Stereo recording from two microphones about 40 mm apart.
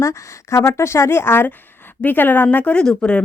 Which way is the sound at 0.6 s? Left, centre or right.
Left.